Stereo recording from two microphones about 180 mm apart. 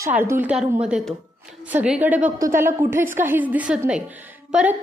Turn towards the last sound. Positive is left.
turn(degrees=-5)  # may be behind; listen again after turning